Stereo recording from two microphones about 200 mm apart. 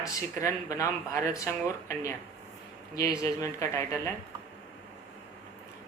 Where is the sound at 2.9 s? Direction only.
15° left (ahead or behind).